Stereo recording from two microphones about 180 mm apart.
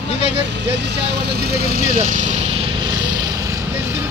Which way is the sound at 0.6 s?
70° right (ahead or behind).